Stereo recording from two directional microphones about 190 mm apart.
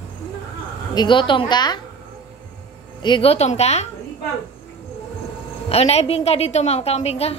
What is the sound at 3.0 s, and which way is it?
Speech, 25° left (ahead or behind).